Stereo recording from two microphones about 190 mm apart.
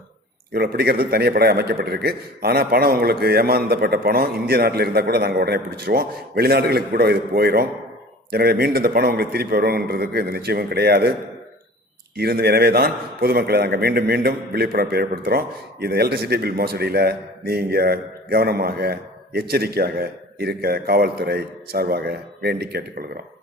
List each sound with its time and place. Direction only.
0.5 s a man's voice: 55° right (ahead or behind)
12.1 s a man's voice: 55° right (ahead or behind)